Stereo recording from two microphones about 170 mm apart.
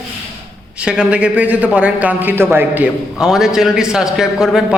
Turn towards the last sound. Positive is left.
turn(degrees=-5)  # may be behind; listen again after turning